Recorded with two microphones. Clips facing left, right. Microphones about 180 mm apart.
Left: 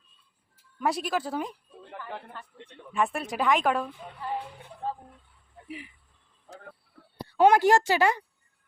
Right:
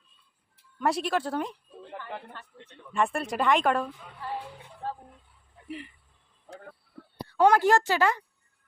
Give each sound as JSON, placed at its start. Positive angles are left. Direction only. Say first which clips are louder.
{"t": 0.8, "sound": "a woman's voice", "louder": "right 1 dB", "side_deg": 0}
{"t": 2.9, "sound": "a woman's voice", "louder": "right 1 dB", "side_deg": 0}
{"t": 5.6, "sound": "speech", "louder": "right 2 dB", "side_deg": 5}
{"t": 7.3, "sound": "a woman's voice", "louder": "left 1 dB", "side_deg": 20}